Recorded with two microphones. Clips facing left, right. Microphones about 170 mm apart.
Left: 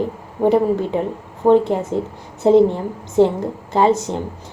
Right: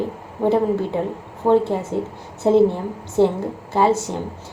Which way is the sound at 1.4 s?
15° left (ahead or behind).